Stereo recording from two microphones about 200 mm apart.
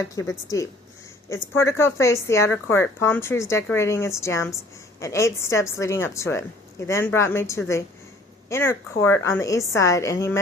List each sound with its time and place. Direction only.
0.0 s a woman's voice: 15° left (ahead or behind)